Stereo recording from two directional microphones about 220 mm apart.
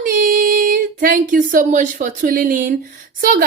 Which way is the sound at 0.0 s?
40° right (ahead or behind).